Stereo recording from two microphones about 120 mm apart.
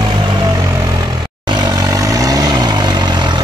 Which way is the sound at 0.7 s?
30° right (ahead or behind).